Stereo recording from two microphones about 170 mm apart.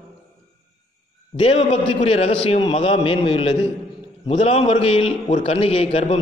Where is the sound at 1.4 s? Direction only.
40° left (ahead or behind).